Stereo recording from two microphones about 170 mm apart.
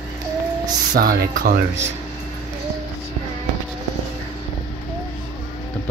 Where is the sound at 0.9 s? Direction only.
60° right (ahead or behind).